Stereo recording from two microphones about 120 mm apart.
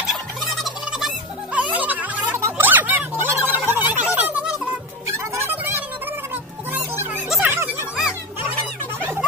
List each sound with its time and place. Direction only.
0.7 s fowl: centre (ahead or behind)
5.0 s music: 25° right (ahead or behind)
7.4 s music: 15° right (ahead or behind)